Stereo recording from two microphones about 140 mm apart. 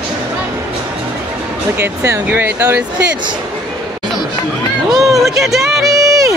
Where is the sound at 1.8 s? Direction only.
20° right (ahead or behind).